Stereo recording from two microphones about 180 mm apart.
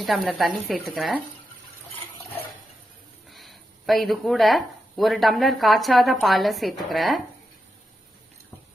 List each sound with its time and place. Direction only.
0.0 s speech: centre (ahead or behind)
3.2 s speech: centre (ahead or behind)